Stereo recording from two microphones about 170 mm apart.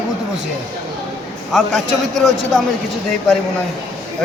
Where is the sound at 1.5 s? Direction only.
Centre (ahead or behind).